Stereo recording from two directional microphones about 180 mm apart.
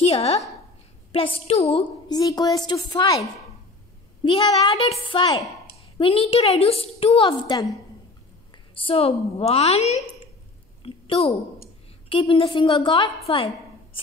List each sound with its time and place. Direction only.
0.0 s a woman's voice: 35° left (ahead or behind)
4.2 s a woman's voice: 25° left (ahead or behind)
8.7 s a woman's voice: 30° left (ahead or behind)
10.8 s a sound: 30° left (ahead or behind)
12.1 s a woman's voice: 30° left (ahead or behind)